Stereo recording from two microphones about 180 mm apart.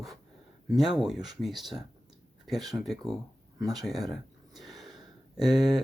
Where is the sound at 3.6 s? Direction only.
20° right (ahead or behind).